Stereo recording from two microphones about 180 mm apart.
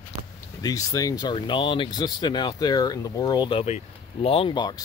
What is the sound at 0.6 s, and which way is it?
Speech, 20° left (ahead or behind).